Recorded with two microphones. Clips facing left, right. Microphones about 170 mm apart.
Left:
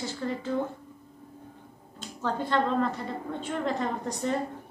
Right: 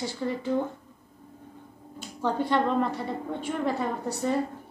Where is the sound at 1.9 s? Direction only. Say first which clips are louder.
Right 3 dB; 15° right (ahead or behind).